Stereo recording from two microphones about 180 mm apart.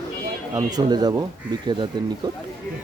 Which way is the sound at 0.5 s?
20° right (ahead or behind).